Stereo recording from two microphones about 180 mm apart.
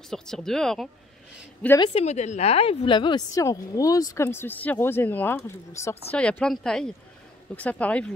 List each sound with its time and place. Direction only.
0.1 s speech: 5° left (ahead or behind)
1.8 s a woman's voice: 35° left (ahead or behind); by 8.1 s 5° left (ahead or behind)